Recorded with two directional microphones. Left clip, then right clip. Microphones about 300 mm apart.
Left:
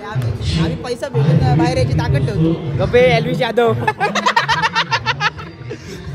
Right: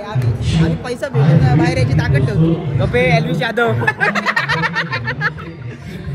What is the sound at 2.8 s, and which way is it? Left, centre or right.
Speech, left.